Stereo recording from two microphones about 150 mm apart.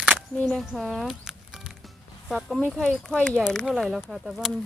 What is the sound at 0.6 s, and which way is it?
Music, centre (ahead or behind).